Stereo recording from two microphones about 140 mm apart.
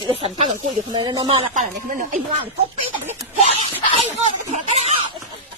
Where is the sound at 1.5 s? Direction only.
70° right (ahead or behind).